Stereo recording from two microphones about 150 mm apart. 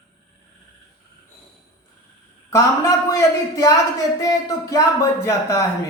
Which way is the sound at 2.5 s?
20° left (ahead or behind).